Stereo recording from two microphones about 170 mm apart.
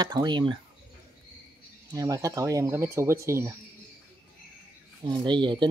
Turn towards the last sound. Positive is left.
turn(degrees=-30)  # may be behind; listen again after turning